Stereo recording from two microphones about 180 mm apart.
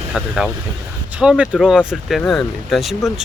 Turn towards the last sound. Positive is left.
turn(degrees=0)  # may be behind; listen again after turning